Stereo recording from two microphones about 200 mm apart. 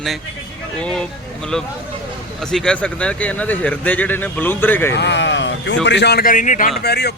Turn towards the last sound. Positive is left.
turn(degrees=55)  # may be behind; listen again after turning